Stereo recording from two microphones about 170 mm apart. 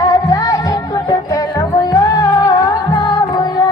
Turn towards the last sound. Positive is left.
turn(degrees=20)  # may be behind; listen again after turning